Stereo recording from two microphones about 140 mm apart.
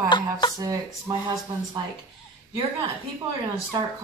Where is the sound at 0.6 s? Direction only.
25° right (ahead or behind).